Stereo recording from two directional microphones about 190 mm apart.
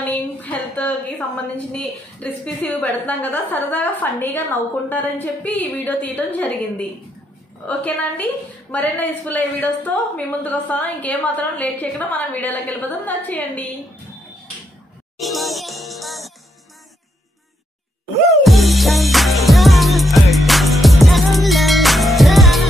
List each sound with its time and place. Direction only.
0.0 s a woman's voice: 10° left (ahead or behind)
15.1 s music: centre (ahead or behind)
18.4 s music: centre (ahead or behind)